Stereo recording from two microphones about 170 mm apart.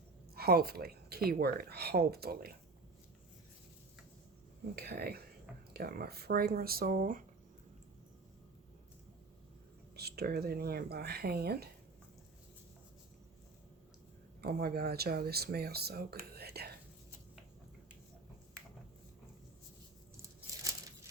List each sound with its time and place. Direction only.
0.3 s speech: 65° right (ahead or behind)
4.7 s speech: 70° right (ahead or behind); by 7.2 s 50° right (ahead or behind)
9.9 s speech: 70° right (ahead or behind)
14.4 s speech: 65° right (ahead or behind)